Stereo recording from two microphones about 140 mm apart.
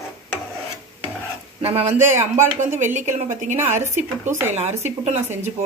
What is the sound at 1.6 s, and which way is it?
Speech, 50° right (ahead or behind).